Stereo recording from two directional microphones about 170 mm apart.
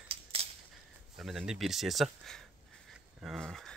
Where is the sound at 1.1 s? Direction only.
Centre (ahead or behind).